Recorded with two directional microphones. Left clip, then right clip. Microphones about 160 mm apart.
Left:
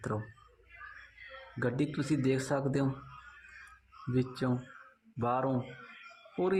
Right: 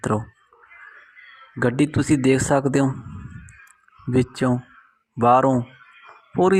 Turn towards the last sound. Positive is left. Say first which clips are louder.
# right 13 dB
turn(degrees=-45)  # may be behind; listen again after turning